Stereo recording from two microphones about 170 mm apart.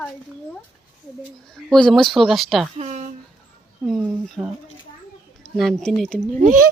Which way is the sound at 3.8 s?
Centre (ahead or behind).